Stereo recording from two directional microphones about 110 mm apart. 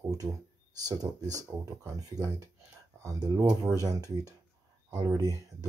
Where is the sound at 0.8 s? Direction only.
35° right (ahead or behind).